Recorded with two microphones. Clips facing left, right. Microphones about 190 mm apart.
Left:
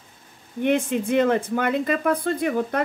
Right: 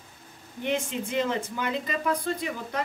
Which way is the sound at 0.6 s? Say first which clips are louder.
Left 8 dB; 55° left (ahead or behind).